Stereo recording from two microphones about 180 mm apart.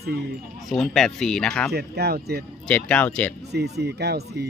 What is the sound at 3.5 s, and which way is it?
Speech, 65° right (ahead or behind).